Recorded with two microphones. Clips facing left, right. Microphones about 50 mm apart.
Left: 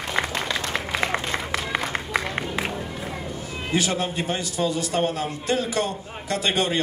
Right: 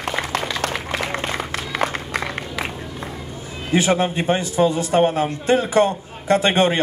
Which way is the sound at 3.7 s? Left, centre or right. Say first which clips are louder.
Right 6 dB; right.